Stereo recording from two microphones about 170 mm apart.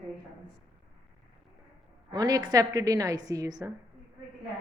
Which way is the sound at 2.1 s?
20° right (ahead or behind).